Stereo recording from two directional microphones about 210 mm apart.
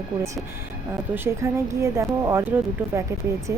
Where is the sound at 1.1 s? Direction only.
10° right (ahead or behind).